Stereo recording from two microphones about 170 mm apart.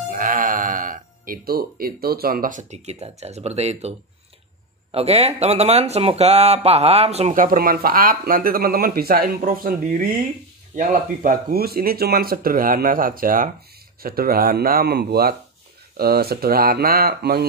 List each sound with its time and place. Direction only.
0.1 s speech: 50° right (ahead or behind)
4.9 s speech: 35° right (ahead or behind)
7.4 s speech: 60° right (ahead or behind)